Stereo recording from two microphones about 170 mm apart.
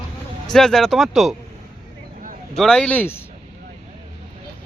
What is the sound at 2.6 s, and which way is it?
Speech, 5° left (ahead or behind).